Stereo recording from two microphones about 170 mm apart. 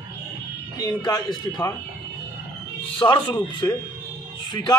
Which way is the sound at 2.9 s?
25° left (ahead or behind).